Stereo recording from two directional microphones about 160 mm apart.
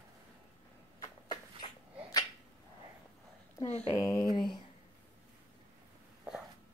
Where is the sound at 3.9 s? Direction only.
20° left (ahead or behind).